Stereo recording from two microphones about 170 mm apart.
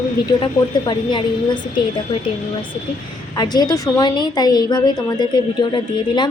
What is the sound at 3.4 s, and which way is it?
A woman's voice, 25° left (ahead or behind).